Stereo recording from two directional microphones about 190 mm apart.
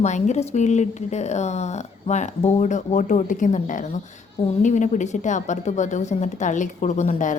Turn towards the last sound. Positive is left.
turn(degrees=40)  # may be behind; listen again after turning